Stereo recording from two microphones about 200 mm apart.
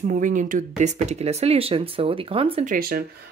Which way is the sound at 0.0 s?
40° right (ahead or behind).